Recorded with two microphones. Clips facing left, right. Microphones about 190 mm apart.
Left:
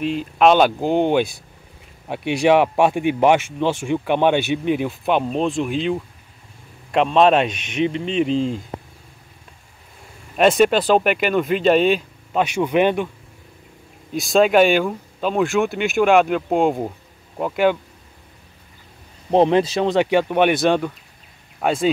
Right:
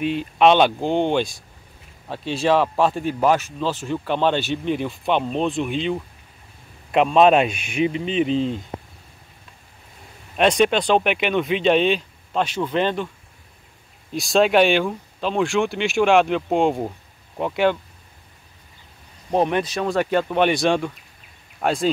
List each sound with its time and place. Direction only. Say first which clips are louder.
0.0 s speech: left 1 dB; centre (ahead or behind)
10.3 s speech: left 3 dB; 5° left (ahead or behind)
14.1 s speech: left 2 dB; centre (ahead or behind)
19.3 s speech: left 5 dB; 30° left (ahead or behind); by 21.9 s centre (ahead or behind)